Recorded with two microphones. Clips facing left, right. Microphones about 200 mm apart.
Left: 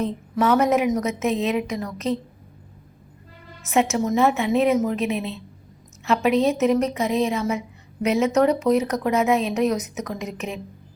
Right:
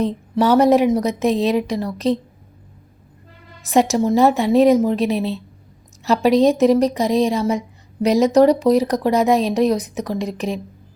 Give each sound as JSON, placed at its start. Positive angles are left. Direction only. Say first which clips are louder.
{"t": 0.0, "sound": "speech", "louder": "right 4 dB", "side_deg": -35}
{"t": 3.6, "sound": "speech", "louder": "right 5 dB", "side_deg": -35}